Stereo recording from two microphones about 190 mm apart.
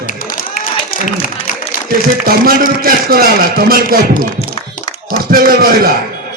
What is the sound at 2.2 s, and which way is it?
Speech, 50° right (ahead or behind).